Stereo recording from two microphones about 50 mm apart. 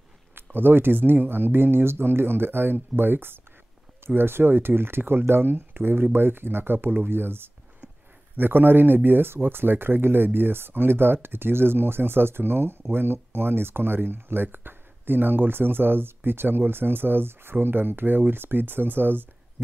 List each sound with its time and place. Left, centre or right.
0.3 s speech: right